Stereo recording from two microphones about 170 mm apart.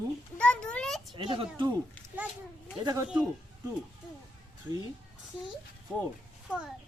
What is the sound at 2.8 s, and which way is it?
Speech, 20° right (ahead or behind).